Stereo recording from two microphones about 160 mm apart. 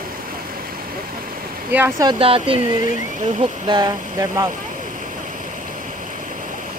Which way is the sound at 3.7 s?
25° right (ahead or behind).